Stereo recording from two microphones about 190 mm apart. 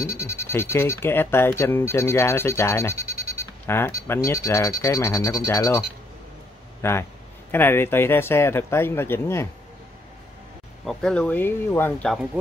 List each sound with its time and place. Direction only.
0.5 s speech: 15° left (ahead or behind)
6.8 s speech: 15° left (ahead or behind)
10.9 s speech: 5° left (ahead or behind)